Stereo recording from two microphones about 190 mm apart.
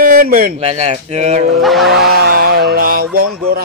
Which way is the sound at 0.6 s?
35° right (ahead or behind).